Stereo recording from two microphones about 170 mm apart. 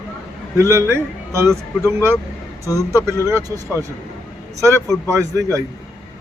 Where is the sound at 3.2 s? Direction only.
20° right (ahead or behind).